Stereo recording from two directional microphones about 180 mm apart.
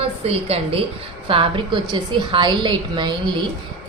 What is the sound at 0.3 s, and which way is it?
A woman's voice, 35° right (ahead or behind).